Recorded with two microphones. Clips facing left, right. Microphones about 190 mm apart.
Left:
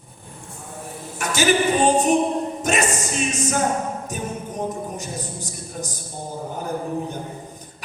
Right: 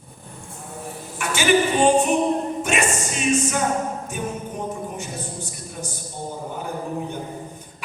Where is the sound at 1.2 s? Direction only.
40° left (ahead or behind).